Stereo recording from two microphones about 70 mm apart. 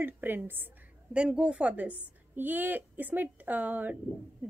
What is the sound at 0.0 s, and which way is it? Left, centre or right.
Speech, right.